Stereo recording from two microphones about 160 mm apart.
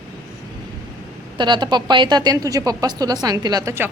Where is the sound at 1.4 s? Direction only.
30° right (ahead or behind).